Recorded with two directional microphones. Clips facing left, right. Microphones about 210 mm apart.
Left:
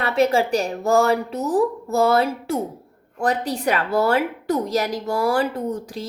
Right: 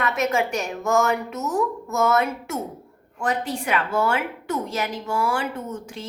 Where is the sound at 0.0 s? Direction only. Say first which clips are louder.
Left 4 dB; 30° left (ahead or behind).